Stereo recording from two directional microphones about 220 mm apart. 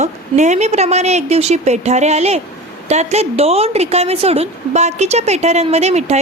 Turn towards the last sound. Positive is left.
turn(degrees=-30)  # may be behind; listen again after turning